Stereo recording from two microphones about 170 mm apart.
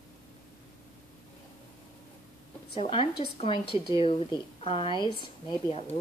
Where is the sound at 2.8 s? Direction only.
30° left (ahead or behind).